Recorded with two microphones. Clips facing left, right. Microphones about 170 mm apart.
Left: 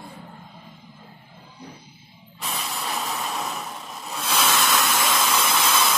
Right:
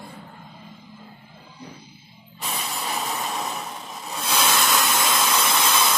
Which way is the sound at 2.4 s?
Centre (ahead or behind).